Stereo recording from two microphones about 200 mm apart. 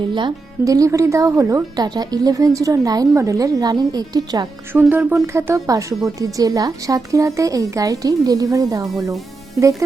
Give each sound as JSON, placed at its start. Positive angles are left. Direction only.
{"t": 0.1, "sound": "speech", "side_deg": -25}
{"t": 4.8, "sound": "speech", "side_deg": -5}